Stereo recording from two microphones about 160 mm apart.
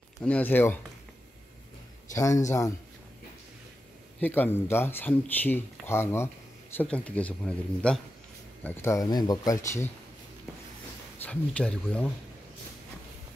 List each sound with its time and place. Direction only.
0.2 s speech: 10° left (ahead or behind)
2.1 s speech: 20° left (ahead or behind)
4.2 s speech: 10° left (ahead or behind)
8.6 s speech: 15° left (ahead or behind)
11.2 s speech: 5° left (ahead or behind)